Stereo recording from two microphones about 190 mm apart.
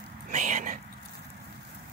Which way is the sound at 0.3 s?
40° right (ahead or behind).